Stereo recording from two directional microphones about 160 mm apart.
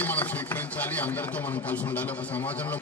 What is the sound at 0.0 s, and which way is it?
Chopping, 10° left (ahead or behind).